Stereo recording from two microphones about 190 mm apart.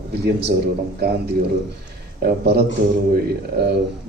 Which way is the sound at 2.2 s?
55° right (ahead or behind).